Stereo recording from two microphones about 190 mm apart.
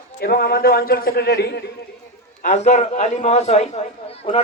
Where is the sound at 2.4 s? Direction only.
40° left (ahead or behind).